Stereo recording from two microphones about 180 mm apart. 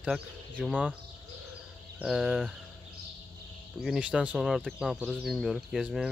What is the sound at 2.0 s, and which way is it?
Speech, centre (ahead or behind).